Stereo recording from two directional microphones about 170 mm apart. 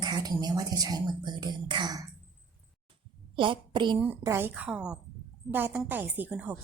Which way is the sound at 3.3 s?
30° right (ahead or behind).